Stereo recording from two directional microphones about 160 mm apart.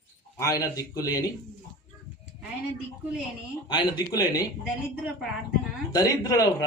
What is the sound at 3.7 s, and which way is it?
Speech, 25° left (ahead or behind).